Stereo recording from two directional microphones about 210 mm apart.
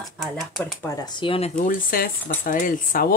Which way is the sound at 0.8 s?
20° left (ahead or behind).